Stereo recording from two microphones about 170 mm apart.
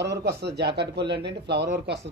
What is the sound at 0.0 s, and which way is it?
Speech, 85° right.